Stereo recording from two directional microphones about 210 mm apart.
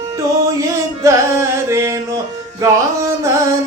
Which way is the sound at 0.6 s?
15° right (ahead or behind).